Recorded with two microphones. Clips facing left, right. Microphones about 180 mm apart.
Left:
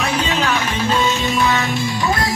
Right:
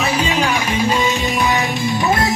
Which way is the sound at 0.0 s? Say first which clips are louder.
Right 2 dB; 10° right (ahead or behind).